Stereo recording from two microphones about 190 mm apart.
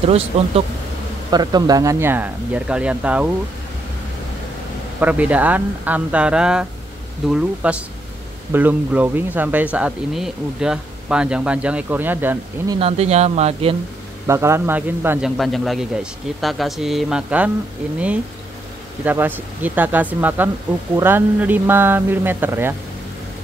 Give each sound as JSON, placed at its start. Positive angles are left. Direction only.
{"t": 0.0, "sound": "speech", "side_deg": -30}
{"t": 5.0, "sound": "a man's voice", "side_deg": -10}
{"t": 12.7, "sound": "speech", "side_deg": -30}
{"t": 14.2, "sound": "a man's voice", "side_deg": -15}